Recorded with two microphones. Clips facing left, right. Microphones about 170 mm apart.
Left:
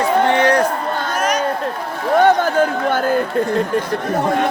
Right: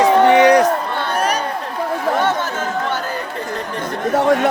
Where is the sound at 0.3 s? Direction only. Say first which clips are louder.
Right 6 dB; 15° right (ahead or behind).